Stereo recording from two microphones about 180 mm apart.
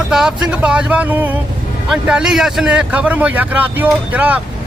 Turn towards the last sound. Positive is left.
turn(degrees=-10)  # may be behind; listen again after turning